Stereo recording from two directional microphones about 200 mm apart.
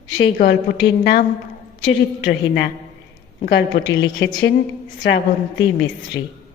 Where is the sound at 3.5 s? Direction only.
60° left (ahead or behind).